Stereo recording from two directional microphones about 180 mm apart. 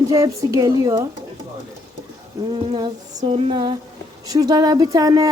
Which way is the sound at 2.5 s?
25° right (ahead or behind).